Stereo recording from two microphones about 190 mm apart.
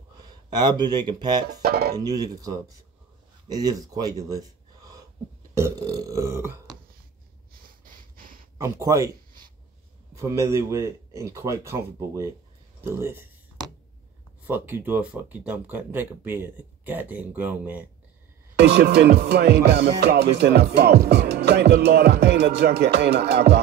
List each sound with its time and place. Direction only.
0.2 s speech: 20° right (ahead or behind)
1.6 s music: 55° right (ahead or behind)
2.0 s speech: 20° right (ahead or behind)
7.5 s a sound: 50° right (ahead or behind)
8.5 s speech: 15° right (ahead or behind)
12.8 s a sound: 15° right (ahead or behind)
14.4 s speech: 10° right (ahead or behind)
18.6 s music: 60° right (ahead or behind)